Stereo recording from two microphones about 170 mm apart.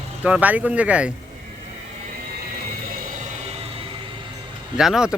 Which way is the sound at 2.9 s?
45° right (ahead or behind).